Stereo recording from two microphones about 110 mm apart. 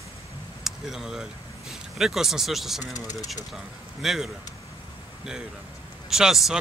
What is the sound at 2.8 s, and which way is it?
Speech, 35° left (ahead or behind).